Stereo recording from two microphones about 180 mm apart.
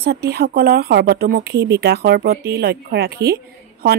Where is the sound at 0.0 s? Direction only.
60° right (ahead or behind).